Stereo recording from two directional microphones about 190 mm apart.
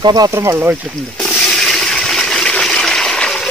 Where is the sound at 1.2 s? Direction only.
Centre (ahead or behind).